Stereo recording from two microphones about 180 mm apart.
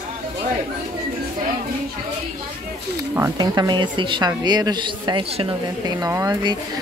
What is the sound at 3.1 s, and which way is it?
A woman's voice, 20° right (ahead or behind).